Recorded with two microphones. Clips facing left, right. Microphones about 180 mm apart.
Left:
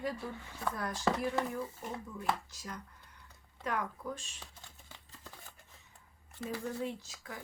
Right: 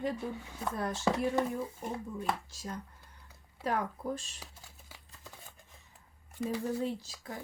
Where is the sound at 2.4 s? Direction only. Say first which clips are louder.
Right 4 dB; 30° right (ahead or behind).